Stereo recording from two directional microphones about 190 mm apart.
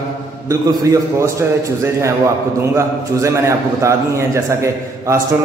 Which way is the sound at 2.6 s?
15° right (ahead or behind).